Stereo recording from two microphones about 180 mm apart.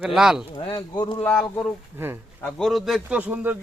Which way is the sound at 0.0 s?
5° right (ahead or behind).